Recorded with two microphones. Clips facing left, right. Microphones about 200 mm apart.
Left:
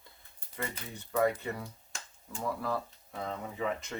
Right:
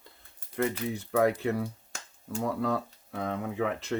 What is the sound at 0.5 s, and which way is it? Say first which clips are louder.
Speech: right 11 dB; 65° right (ahead or behind).